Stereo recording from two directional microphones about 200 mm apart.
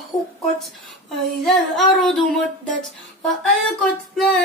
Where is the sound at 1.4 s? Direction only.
Centre (ahead or behind).